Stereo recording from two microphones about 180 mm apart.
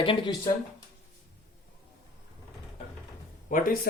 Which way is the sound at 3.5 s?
50° left (ahead or behind).